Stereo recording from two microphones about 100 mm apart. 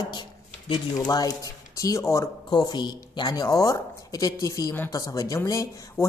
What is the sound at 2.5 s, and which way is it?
Speech, 45° left (ahead or behind).